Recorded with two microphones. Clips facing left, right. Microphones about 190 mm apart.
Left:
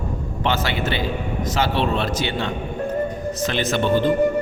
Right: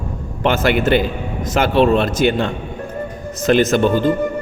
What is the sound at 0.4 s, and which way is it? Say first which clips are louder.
A man's voice: right 8 dB; 50° right (ahead or behind).